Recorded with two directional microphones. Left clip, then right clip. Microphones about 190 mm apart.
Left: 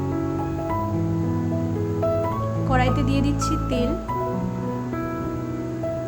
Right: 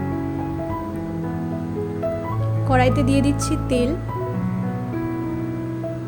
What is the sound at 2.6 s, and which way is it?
Speech, 15° right (ahead or behind).